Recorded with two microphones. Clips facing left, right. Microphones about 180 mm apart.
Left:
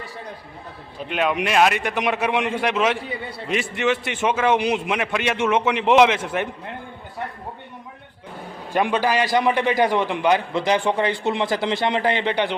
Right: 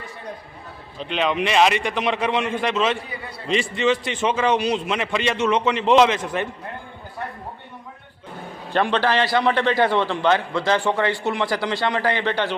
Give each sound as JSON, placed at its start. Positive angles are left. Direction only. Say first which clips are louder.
{"t": 0.9, "sound": "a man's voice", "louder": "even", "side_deg": 10}
{"t": 8.7, "sound": "a man's voice", "louder": "even", "side_deg": 10}